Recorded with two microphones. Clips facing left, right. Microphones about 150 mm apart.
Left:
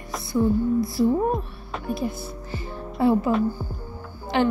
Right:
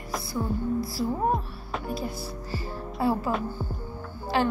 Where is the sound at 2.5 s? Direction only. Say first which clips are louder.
Left 1 dB; 20° left (ahead or behind).